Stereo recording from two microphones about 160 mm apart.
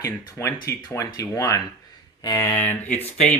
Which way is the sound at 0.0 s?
20° left (ahead or behind).